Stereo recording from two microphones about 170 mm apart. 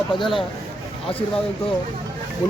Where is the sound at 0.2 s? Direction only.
Centre (ahead or behind).